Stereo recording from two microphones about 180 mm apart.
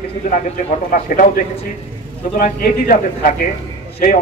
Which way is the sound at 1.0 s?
50° left (ahead or behind).